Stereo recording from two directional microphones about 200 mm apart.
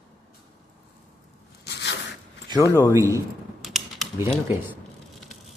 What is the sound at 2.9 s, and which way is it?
Speech, 15° right (ahead or behind).